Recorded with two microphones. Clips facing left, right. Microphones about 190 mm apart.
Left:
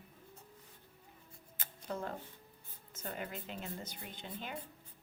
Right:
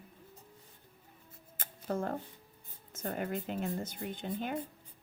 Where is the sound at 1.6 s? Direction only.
50° right (ahead or behind).